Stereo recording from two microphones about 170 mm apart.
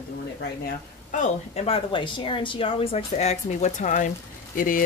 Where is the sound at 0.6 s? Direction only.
50° left (ahead or behind).